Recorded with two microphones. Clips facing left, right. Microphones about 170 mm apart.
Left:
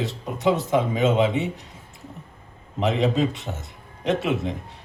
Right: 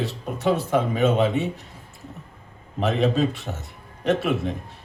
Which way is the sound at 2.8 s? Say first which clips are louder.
Even; 20° left (ahead or behind).